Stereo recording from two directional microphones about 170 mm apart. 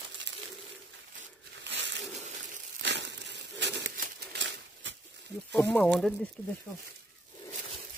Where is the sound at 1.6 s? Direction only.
90° right.